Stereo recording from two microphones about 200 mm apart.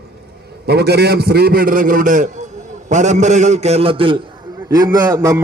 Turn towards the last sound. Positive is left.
turn(degrees=-15)  # may be behind; listen again after turning